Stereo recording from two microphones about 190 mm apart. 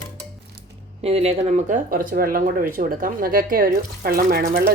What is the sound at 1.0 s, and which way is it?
Speech, 30° right (ahead or behind).